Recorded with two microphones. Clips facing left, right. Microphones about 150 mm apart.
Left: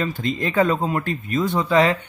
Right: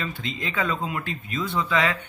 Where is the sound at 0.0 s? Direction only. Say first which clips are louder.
Left 8 dB; 45° left (ahead or behind).